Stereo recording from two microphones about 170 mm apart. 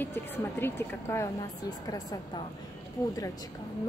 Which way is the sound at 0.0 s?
10° left (ahead or behind).